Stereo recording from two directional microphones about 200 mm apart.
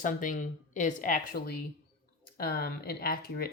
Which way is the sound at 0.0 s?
40° left (ahead or behind).